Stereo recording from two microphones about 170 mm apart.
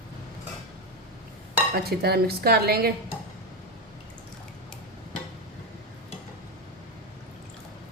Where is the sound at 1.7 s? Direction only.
65° right (ahead or behind).